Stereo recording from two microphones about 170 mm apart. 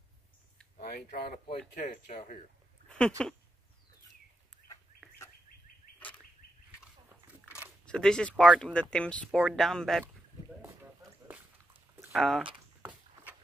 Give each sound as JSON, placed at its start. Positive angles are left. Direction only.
{"t": 0.7, "sound": "speech", "side_deg": 65}
{"t": 1.8, "sound": "speech", "side_deg": 50}
{"t": 3.2, "sound": "speech", "side_deg": 5}
{"t": 4.9, "sound": "bird", "side_deg": 60}
{"t": 5.9, "sound": "a sound", "side_deg": 10}
{"t": 7.4, "sound": "biting", "side_deg": -10}
{"t": 7.8, "sound": "speech", "side_deg": 5}
{"t": 12.1, "sound": "speech", "side_deg": 0}